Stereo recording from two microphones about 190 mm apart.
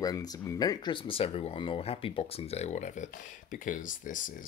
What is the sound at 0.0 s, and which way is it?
Speech, 20° left (ahead or behind).